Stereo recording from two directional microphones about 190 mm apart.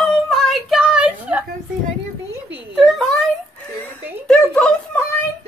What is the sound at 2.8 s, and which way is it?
Speech, centre (ahead or behind).